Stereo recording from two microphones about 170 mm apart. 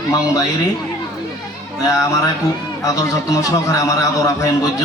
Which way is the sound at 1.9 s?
20° left (ahead or behind).